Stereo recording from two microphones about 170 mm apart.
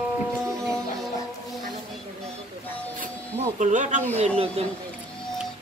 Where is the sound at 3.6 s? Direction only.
45° right (ahead or behind).